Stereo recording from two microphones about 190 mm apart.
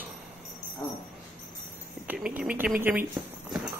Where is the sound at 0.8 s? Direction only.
20° left (ahead or behind).